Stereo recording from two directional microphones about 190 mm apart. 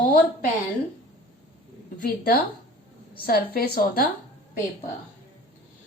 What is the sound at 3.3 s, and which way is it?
Speech, 50° left (ahead or behind).